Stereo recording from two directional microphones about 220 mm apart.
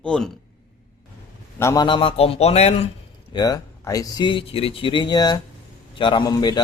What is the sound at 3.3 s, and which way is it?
Speech, 15° left (ahead or behind).